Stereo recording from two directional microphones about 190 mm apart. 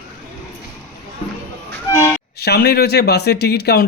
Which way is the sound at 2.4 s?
55° left (ahead or behind).